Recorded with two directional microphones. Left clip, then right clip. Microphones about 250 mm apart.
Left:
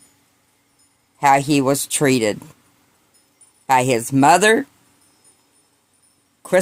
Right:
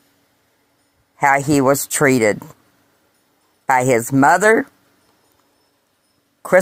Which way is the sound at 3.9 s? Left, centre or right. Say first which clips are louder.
Right 1 dB; right.